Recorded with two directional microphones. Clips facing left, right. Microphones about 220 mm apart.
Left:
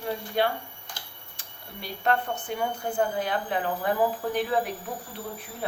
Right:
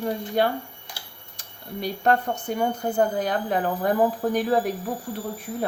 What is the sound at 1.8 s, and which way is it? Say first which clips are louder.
Speech: right 4 dB; 40° right (ahead or behind).